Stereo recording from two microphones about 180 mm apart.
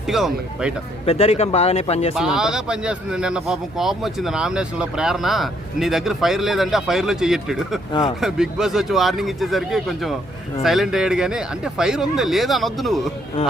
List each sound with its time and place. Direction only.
0.1 s speech: centre (ahead or behind)
1.0 s speech: 35° left (ahead or behind)
2.1 s speech: 5° right (ahead or behind)